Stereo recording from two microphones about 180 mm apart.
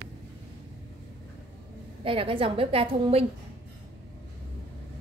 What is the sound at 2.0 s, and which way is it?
A woman's voice, 30° right (ahead or behind).